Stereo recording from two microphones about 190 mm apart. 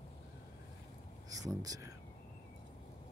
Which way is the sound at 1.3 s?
20° right (ahead or behind).